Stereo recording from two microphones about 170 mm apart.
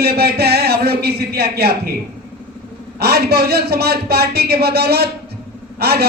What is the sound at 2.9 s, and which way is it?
A man's voice, 70° right (ahead or behind).